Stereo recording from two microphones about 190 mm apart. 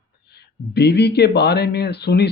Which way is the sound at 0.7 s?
60° left (ahead or behind).